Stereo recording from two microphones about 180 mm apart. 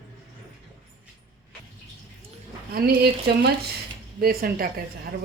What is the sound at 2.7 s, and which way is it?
Speech, 60° right (ahead or behind).